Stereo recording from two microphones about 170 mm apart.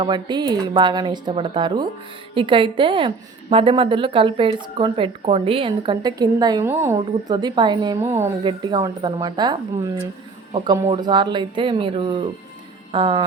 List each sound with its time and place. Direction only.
0.0 s speech: 25° right (ahead or behind)